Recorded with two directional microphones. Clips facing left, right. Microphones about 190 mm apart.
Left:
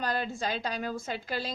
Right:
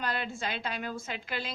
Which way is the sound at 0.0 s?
40° left (ahead or behind).